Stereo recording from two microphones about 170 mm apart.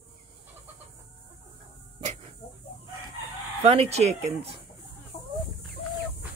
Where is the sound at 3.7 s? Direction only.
40° right (ahead or behind).